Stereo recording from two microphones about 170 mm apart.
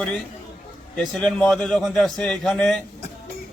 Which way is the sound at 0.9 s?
5° left (ahead or behind).